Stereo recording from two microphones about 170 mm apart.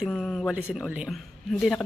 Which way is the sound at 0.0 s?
Centre (ahead or behind).